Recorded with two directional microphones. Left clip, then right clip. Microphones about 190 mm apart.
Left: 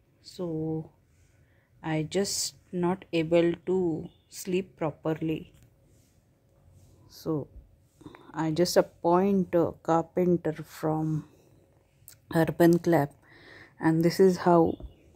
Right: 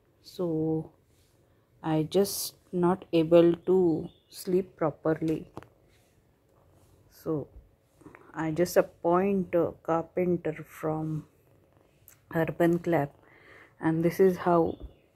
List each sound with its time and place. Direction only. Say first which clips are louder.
0.4 s speech: right 4 dB; 5° right (ahead or behind)
4.4 s speech: right 3 dB; 15° left (ahead or behind)
7.2 s speech: even; 15° left (ahead or behind)
8.0 s a sound: left 2 dB; 20° left (ahead or behind)
8.7 s speech: left 1 dB; 20° left (ahead or behind)
12.3 s speech: left 3 dB; 25° left (ahead or behind)